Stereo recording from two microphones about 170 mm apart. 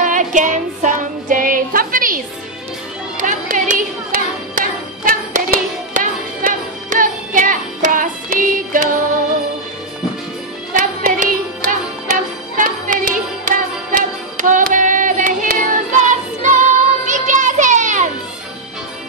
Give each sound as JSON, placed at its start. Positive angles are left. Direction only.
{"t": 0.0, "sound": "music", "side_deg": -50}
{"t": 10.7, "sound": "music", "side_deg": -50}